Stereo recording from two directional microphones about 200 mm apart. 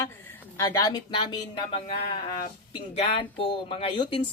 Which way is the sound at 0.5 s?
15° left (ahead or behind).